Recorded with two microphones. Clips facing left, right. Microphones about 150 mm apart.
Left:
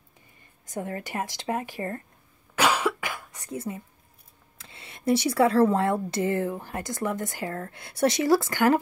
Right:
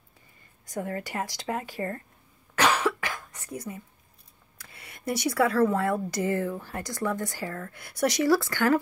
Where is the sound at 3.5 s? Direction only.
25° left (ahead or behind).